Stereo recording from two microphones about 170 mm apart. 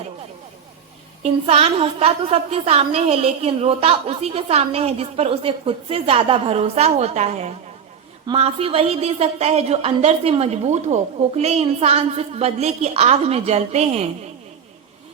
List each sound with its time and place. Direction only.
1.2 s a woman's voice: 35° right (ahead or behind)